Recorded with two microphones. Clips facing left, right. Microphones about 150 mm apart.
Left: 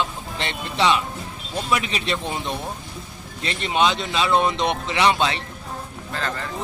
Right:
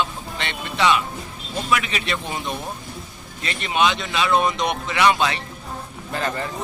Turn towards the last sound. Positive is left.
turn(degrees=-15)  # may be behind; listen again after turning